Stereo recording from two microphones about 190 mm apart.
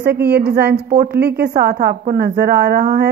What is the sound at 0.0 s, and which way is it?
A woman's voice, 55° right (ahead or behind).